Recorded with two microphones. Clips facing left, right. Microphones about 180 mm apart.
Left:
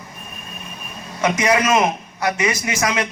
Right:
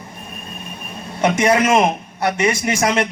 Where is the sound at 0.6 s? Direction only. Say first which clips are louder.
Right 3 dB; 30° right (ahead or behind).